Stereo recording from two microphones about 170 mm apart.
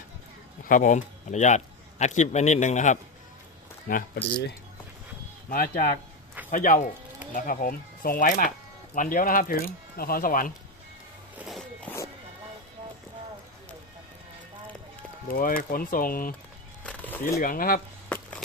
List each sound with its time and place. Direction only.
0.7 s a man's voice: 50° left (ahead or behind)
3.8 s speech: 55° left (ahead or behind)
6.5 s speech: 50° left (ahead or behind)
11.3 s zipper: centre (ahead or behind)
15.3 s speech: 55° left (ahead or behind)
16.8 s a sound: 10° left (ahead or behind)
17.2 s speech: 55° left (ahead or behind)